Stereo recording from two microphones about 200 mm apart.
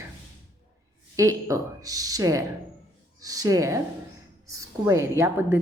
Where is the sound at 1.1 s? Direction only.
15° right (ahead or behind).